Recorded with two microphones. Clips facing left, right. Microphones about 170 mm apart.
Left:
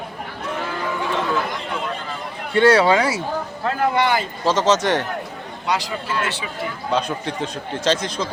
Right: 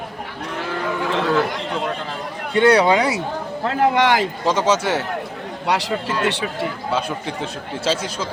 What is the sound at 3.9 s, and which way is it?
Speech, 90° right.